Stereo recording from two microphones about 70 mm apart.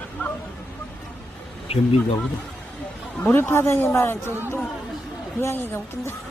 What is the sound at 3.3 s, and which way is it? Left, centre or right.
Speech, left.